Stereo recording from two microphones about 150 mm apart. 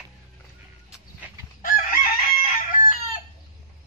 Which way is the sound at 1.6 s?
70° left (ahead or behind).